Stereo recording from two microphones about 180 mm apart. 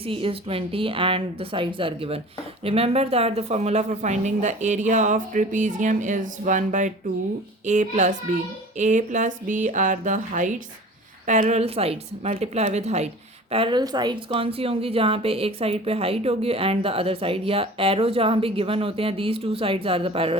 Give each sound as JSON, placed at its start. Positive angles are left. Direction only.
{"t": 0.0, "sound": "a woman's voice", "side_deg": -30}